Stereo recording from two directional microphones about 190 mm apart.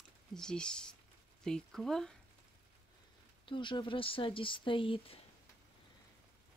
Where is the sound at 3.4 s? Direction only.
25° left (ahead or behind).